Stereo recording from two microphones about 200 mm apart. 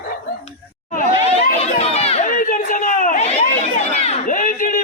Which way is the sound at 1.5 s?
30° left (ahead or behind).